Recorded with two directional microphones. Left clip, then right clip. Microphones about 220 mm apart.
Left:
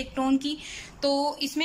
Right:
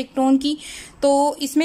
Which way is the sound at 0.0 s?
20° right (ahead or behind).